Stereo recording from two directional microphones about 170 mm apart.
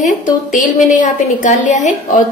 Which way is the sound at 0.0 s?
50° left (ahead or behind).